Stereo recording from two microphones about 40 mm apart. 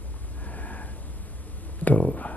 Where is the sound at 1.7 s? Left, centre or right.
Left.